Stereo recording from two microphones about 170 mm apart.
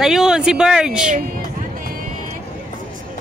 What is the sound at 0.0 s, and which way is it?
Speech, centre (ahead or behind).